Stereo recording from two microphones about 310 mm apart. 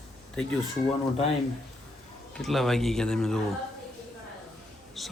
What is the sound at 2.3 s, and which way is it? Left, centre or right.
Speech, centre.